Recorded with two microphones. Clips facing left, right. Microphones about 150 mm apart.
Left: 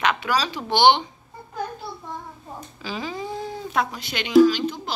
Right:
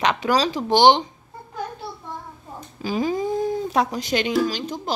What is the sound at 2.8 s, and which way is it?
Speech, 45° right (ahead or behind).